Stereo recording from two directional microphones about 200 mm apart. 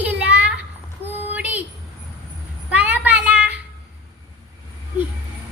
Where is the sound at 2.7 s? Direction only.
5° right (ahead or behind).